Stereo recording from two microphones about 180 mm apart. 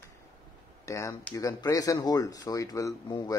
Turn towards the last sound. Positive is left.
turn(degrees=20)  # may be behind; listen again after turning